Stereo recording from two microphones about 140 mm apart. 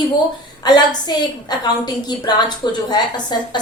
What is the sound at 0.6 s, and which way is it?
A woman's voice, 30° left (ahead or behind).